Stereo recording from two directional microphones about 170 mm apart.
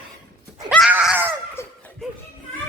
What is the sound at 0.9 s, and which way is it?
Screaming, 5° right (ahead or behind).